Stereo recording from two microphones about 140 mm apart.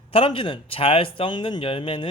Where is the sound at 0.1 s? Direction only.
40° left (ahead or behind).